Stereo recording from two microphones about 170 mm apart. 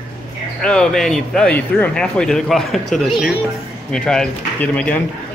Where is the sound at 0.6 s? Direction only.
5° left (ahead or behind).